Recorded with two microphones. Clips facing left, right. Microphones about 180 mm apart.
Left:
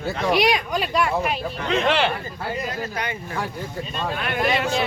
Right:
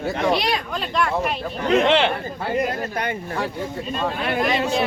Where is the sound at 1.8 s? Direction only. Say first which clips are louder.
Right 1 dB; 20° right (ahead or behind).